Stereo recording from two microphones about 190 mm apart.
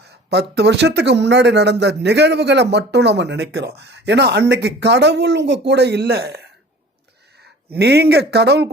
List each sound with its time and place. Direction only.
0.0 s speech: 60° right (ahead or behind)